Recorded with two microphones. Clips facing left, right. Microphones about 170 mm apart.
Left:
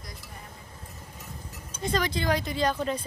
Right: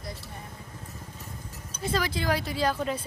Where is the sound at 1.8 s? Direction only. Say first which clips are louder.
Left 1 dB; 5° right (ahead or behind).